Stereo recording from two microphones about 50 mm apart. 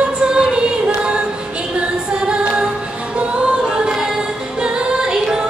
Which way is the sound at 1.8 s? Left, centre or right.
Right.